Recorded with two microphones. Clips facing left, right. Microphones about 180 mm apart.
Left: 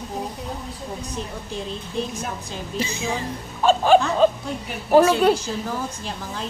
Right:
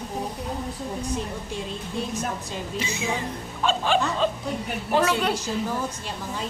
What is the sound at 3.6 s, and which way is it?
Speech, 40° left (ahead or behind).